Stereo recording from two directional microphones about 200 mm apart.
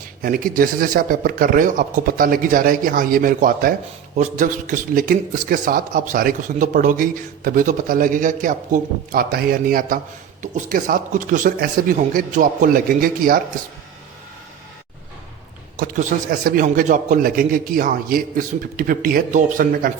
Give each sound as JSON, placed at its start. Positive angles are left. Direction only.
{"t": 0.2, "sound": "a man's voice", "side_deg": -45}
{"t": 15.8, "sound": "a man's voice", "side_deg": -40}